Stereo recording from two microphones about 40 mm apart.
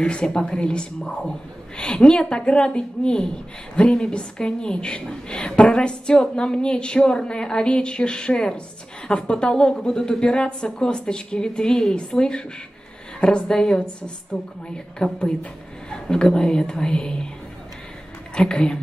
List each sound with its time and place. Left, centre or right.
0.0 s a woman's voice: left
13.5 s a woman's voice: centre
18.3 s a woman's voice: left